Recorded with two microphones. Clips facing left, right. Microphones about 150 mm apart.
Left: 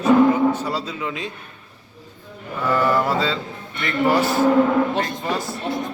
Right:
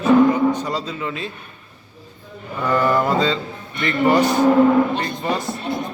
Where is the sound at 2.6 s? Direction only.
5° left (ahead or behind).